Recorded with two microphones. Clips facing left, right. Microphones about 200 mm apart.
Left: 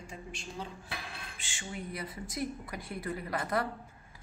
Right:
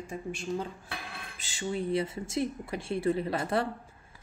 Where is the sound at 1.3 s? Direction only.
35° right (ahead or behind).